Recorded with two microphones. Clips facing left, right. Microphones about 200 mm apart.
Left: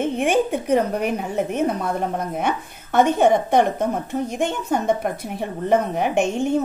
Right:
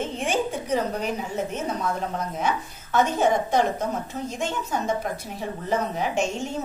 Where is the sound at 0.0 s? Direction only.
60° left (ahead or behind).